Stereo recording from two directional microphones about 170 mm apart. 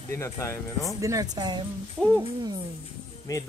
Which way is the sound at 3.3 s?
20° left (ahead or behind).